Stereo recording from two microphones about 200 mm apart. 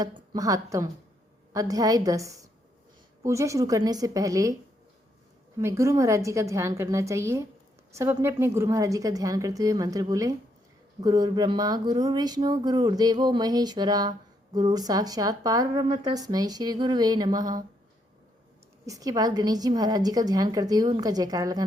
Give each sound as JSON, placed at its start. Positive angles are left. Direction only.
{"t": 0.0, "sound": "a woman's voice", "side_deg": -15}
{"t": 5.5, "sound": "a woman's voice", "side_deg": -15}
{"t": 18.9, "sound": "speech", "side_deg": -20}